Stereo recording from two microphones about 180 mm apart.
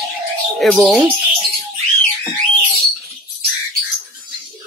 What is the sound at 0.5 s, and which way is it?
Speech, centre (ahead or behind).